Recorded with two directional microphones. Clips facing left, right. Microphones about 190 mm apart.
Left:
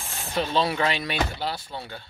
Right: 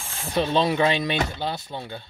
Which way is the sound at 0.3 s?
20° right (ahead or behind).